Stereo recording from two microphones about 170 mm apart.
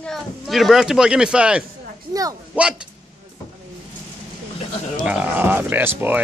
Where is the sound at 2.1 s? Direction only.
20° right (ahead or behind).